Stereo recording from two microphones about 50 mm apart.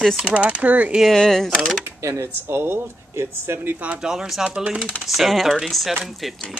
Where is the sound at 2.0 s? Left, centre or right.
Right.